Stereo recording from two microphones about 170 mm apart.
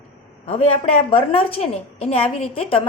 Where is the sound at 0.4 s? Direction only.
35° left (ahead or behind).